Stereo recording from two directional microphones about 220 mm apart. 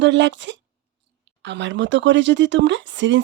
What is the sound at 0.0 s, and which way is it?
Speech, 55° right (ahead or behind).